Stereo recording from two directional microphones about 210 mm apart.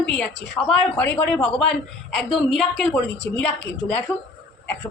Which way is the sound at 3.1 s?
55° left (ahead or behind).